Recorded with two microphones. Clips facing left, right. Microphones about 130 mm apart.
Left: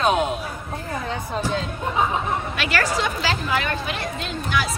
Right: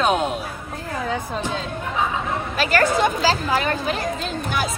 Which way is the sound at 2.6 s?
45° right (ahead or behind).